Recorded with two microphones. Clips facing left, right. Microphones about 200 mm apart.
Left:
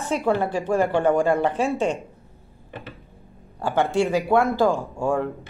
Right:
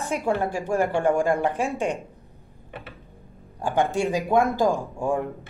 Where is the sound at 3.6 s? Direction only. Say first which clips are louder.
Left 2 dB; 15° right (ahead or behind).